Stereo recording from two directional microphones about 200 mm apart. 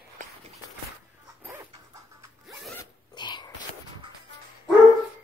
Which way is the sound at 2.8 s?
20° left (ahead or behind).